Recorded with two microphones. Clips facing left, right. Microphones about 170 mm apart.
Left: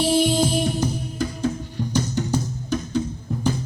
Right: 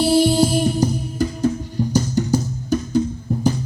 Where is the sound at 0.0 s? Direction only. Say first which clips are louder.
Right 4 dB; 35° right (ahead or behind).